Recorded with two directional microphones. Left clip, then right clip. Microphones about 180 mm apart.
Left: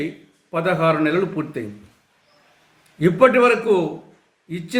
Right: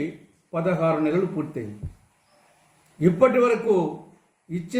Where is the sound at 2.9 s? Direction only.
40° left (ahead or behind).